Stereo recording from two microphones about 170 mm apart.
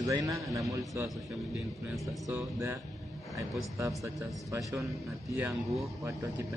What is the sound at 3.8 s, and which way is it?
Speech, 15° right (ahead or behind).